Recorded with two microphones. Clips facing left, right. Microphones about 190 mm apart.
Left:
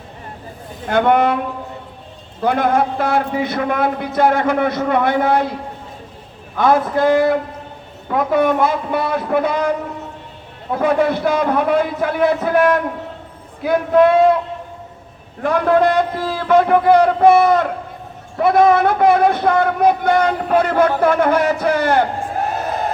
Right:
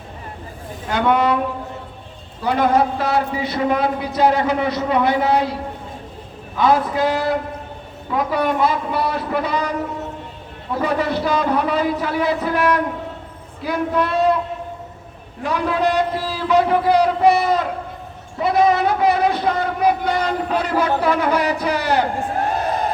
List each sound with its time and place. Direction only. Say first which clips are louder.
0.9 s a man's voice: left 3 dB; 55° left (ahead or behind)
2.4 s a man's voice: left 1 dB; 55° left (ahead or behind)
6.6 s a man's voice: left 2 dB; 50° left (ahead or behind)
10.8 s a man's voice: left 4 dB; 55° left (ahead or behind)
15.4 s a man's voice: left 5 dB; 55° left (ahead or behind)